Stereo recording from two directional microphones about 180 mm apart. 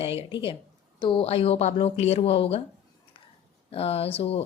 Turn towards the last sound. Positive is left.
turn(degrees=35)  # may be behind; listen again after turning